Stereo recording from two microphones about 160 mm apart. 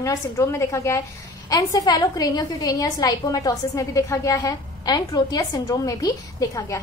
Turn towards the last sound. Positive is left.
turn(degrees=20)  # may be behind; listen again after turning